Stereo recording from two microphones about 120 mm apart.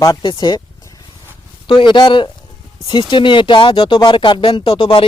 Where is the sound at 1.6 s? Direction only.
40° left (ahead or behind).